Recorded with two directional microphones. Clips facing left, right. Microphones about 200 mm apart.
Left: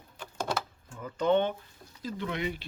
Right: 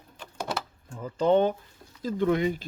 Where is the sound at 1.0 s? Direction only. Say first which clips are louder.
Right 4 dB; 30° right (ahead or behind).